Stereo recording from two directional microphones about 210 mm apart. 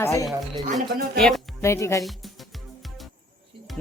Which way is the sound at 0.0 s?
15° left (ahead or behind).